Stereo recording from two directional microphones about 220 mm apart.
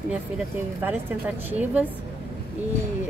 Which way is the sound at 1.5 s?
5° right (ahead or behind).